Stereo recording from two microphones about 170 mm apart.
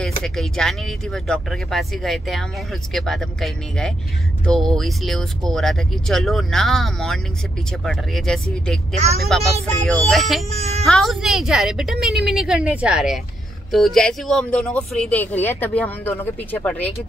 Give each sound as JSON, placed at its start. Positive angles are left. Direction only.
{"t": 0.0, "sound": "speech", "side_deg": 5}
{"t": 8.9, "sound": "a woman's voice", "side_deg": -40}
{"t": 9.2, "sound": "speech", "side_deg": 0}
{"t": 10.5, "sound": "a woman's voice", "side_deg": -40}
{"t": 10.9, "sound": "speech", "side_deg": 0}